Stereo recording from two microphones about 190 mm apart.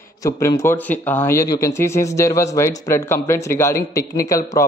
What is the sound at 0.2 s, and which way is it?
Speech, 15° left (ahead or behind).